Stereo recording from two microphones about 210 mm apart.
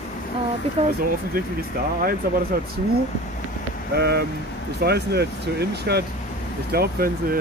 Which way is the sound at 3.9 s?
50° right (ahead or behind).